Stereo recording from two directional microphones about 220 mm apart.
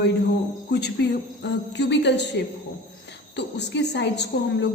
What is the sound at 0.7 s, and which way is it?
A woman's voice, 50° left (ahead or behind).